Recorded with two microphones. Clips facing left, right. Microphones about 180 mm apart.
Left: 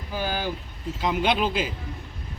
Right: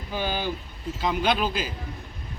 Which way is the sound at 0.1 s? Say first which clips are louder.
Even; 5° left (ahead or behind).